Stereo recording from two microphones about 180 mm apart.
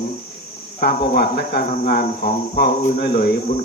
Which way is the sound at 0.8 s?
65° left (ahead or behind).